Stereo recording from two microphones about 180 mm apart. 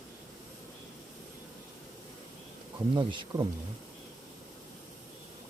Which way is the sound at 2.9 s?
25° right (ahead or behind).